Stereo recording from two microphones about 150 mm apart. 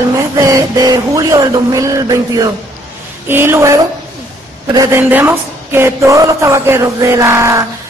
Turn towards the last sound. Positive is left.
turn(degrees=-20)  # may be behind; listen again after turning